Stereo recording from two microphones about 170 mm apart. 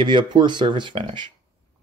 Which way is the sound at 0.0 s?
25° right (ahead or behind).